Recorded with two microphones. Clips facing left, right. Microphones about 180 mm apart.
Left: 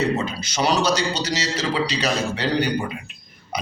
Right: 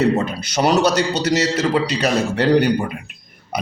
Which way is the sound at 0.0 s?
60° right (ahead or behind).